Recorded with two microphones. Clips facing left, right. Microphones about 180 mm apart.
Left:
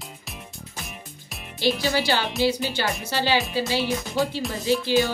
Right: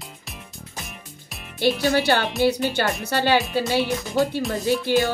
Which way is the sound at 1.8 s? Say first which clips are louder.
Right 4 dB; 55° right (ahead or behind).